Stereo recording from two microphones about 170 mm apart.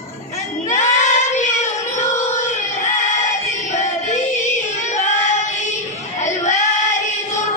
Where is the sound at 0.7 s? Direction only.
45° left (ahead or behind).